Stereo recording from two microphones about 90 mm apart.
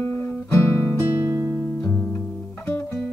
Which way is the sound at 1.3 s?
35° right (ahead or behind).